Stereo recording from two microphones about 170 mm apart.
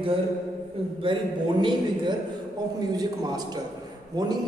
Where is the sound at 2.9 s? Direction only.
20° right (ahead or behind).